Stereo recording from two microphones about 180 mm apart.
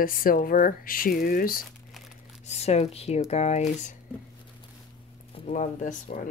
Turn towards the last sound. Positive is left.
turn(degrees=45)  # may be behind; listen again after turning